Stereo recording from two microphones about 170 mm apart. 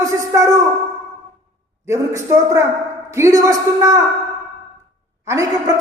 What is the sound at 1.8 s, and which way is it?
A woman's voice, 15° right (ahead or behind).